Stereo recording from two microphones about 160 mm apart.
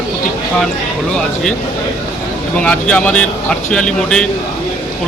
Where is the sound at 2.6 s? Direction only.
10° left (ahead or behind).